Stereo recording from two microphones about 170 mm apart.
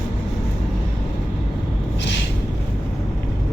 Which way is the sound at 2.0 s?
90° left.